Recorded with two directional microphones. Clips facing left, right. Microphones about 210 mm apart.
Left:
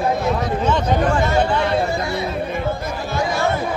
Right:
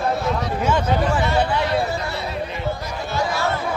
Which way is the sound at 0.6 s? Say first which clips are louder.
Left 2 dB; 10° right (ahead or behind).